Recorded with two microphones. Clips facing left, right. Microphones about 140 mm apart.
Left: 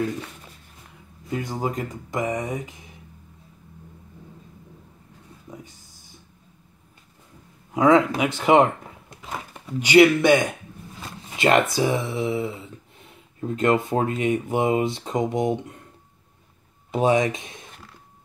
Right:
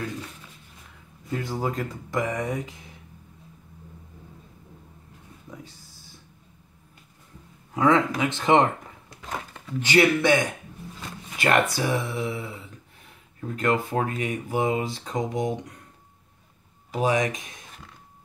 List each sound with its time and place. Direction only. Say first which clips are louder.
1.3 s speech: left 1 dB; 20° left (ahead or behind)
5.5 s a sound: left 1 dB; 20° left (ahead or behind)
7.7 s speech: left 4 dB; 15° left (ahead or behind)
16.9 s speech: left 4 dB; 25° left (ahead or behind)